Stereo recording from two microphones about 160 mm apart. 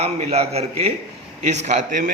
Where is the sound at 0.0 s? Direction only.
40° right (ahead or behind).